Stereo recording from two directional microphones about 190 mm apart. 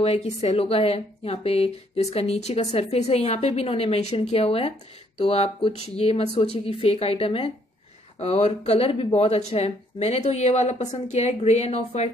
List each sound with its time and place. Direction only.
0.0 s a woman's voice: 35° left (ahead or behind)